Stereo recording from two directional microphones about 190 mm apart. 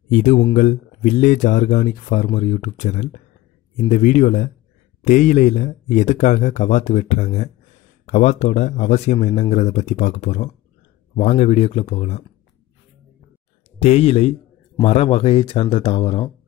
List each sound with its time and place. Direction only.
0.1 s speech: 40° left (ahead or behind)
13.7 s speech: 35° left (ahead or behind)